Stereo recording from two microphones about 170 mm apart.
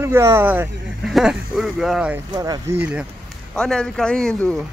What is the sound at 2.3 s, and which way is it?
Speech, 20° right (ahead or behind).